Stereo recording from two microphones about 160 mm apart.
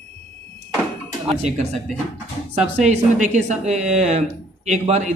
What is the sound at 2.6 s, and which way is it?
Speech, 45° right (ahead or behind).